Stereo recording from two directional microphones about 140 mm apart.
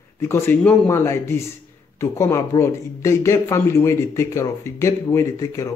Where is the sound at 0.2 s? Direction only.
20° left (ahead or behind).